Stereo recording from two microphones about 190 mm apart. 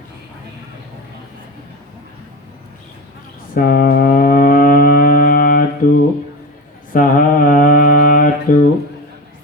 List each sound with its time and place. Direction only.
3.5 s cattle: 50° left (ahead or behind)
6.9 s mantra: 45° left (ahead or behind)